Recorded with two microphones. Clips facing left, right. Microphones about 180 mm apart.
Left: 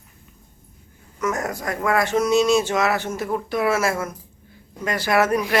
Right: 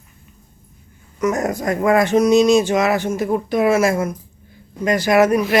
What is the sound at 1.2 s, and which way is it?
Speech, 20° right (ahead or behind).